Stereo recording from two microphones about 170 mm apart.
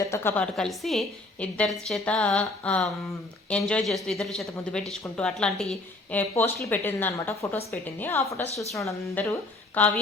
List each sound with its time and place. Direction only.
0.0 s a woman's voice: 15° left (ahead or behind)
0.5 s a woman's voice: centre (ahead or behind)